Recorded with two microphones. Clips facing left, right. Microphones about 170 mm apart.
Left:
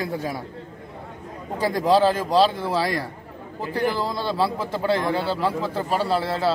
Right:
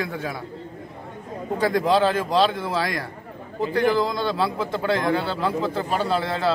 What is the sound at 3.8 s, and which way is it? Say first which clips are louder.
Speech: right 3 dB; 10° left (ahead or behind).